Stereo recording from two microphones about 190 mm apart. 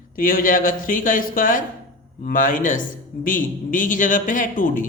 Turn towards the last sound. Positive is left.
turn(degrees=45)  # may be behind; listen again after turning